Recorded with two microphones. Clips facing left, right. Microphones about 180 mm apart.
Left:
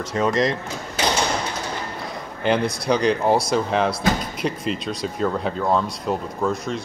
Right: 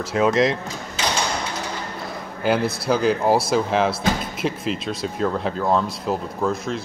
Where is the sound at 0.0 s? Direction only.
5° right (ahead or behind).